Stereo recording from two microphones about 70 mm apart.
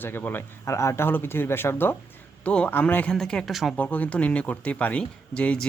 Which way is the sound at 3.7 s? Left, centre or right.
Left.